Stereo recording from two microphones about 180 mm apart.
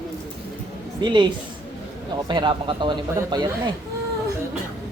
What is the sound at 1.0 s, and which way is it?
Speech, 25° right (ahead or behind).